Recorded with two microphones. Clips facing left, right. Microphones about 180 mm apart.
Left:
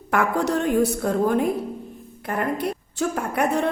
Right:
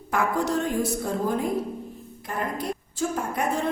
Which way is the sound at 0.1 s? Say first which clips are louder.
Left 3 dB; 65° left (ahead or behind).